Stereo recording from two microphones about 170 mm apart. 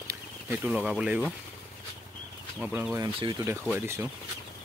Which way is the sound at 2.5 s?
5° right (ahead or behind).